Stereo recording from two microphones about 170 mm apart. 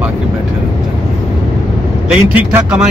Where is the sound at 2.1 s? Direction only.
5° right (ahead or behind).